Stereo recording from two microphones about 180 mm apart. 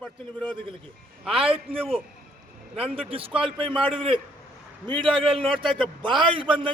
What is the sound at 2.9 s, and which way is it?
A man's voice, 30° right (ahead or behind).